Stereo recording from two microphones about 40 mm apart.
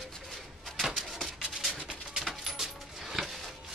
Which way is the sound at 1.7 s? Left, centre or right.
Centre.